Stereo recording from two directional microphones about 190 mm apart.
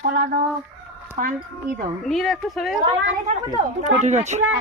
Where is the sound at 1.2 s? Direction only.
45° right (ahead or behind).